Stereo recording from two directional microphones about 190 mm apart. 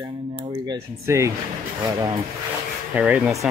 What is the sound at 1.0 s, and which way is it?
Speech, 15° right (ahead or behind).